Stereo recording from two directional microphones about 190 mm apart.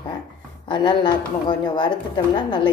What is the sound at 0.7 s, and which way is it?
A woman's voice, 25° left (ahead or behind).